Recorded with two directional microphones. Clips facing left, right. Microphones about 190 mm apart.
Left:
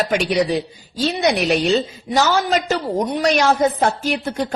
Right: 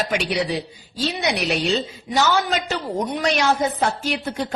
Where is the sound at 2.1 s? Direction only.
40° left (ahead or behind).